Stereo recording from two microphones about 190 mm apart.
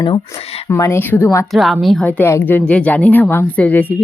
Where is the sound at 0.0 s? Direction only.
25° left (ahead or behind).